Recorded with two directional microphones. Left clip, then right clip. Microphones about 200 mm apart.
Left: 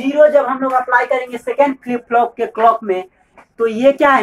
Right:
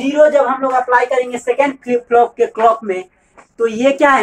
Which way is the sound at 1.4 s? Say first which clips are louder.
Even; 20° left (ahead or behind).